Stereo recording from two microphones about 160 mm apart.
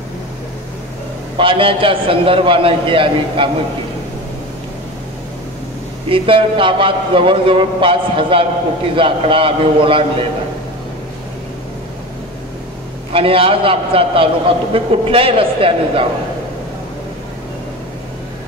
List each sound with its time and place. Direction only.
1.4 s a man's voice: 35° right (ahead or behind)
6.0 s a man's voice: 35° right (ahead or behind)
13.1 s a man's voice: 35° right (ahead or behind)